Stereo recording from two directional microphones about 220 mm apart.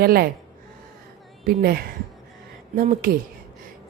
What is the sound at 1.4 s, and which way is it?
A woman's voice, 40° right (ahead or behind).